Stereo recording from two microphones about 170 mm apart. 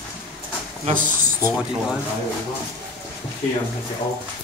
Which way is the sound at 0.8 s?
50° right (ahead or behind).